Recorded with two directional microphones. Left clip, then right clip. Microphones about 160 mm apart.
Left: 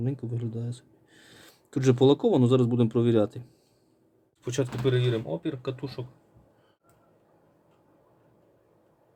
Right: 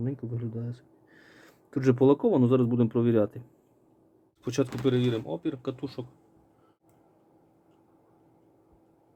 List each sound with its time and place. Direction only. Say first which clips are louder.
0.0 s speech: left 1 dB; centre (ahead or behind)
4.4 s speech: even; 35° right (ahead or behind)